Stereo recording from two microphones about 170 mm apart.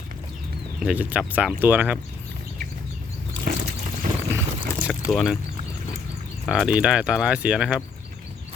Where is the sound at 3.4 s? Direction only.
50° right (ahead or behind).